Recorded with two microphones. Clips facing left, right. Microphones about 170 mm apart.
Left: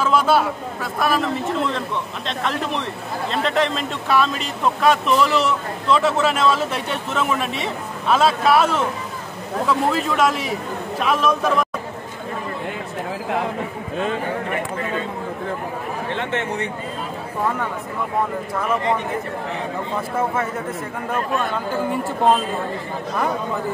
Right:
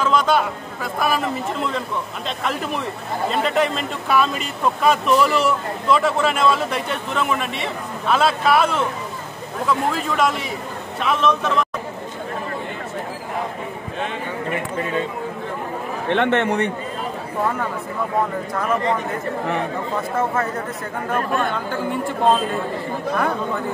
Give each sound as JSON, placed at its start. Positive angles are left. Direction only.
{"t": 0.0, "sound": "a man's voice", "side_deg": 10}
{"t": 9.9, "sound": "a man's voice", "side_deg": 5}
{"t": 16.1, "sound": "a man's voice", "side_deg": -65}